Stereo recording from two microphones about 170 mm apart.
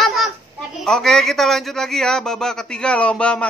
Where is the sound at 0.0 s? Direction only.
Centre (ahead or behind).